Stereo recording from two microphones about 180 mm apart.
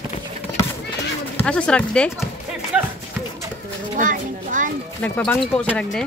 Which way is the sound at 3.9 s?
45° right (ahead or behind).